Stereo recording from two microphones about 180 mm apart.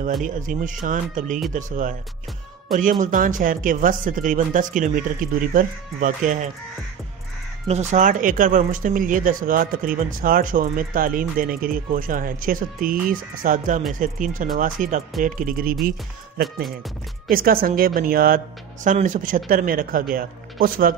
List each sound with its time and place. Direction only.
0.2 s speech: 45° right (ahead or behind)
7.6 s speech: 40° right (ahead or behind)
17.3 s speech: 55° right (ahead or behind)